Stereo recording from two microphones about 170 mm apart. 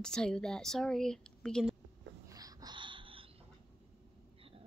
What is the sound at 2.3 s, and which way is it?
Wheeze, 20° right (ahead or behind).